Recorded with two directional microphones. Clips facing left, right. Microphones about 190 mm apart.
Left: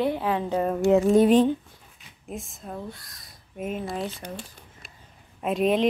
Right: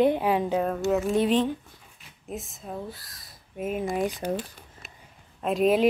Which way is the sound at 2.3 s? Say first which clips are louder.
Even; centre (ahead or behind).